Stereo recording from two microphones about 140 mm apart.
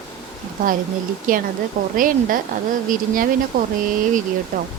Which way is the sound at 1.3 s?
80° right.